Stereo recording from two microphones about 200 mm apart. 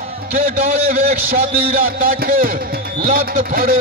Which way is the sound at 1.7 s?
45° right (ahead or behind).